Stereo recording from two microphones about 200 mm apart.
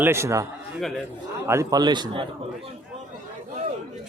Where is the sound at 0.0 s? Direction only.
15° right (ahead or behind).